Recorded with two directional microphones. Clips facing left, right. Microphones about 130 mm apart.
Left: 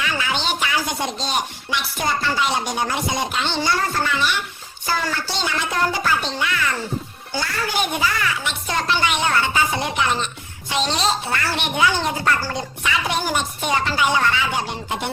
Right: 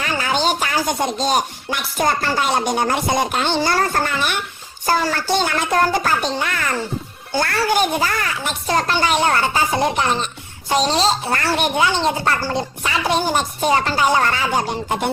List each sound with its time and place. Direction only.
0.0 s speech: 40° right (ahead or behind)
7.8 s speech: 40° right (ahead or behind)
11.8 s speech: 25° right (ahead or behind); by 15.1 s 45° right (ahead or behind)